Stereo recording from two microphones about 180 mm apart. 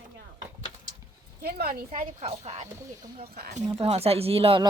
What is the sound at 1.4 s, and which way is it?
Speech, 55° right (ahead or behind).